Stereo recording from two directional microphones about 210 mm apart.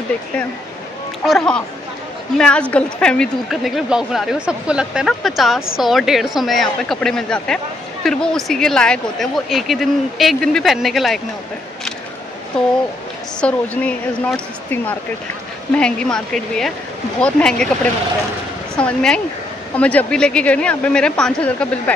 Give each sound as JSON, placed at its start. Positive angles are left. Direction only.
{"t": 1.2, "sound": "speech", "side_deg": 0}
{"t": 12.6, "sound": "speech", "side_deg": 5}
{"t": 18.8, "sound": "speech", "side_deg": 5}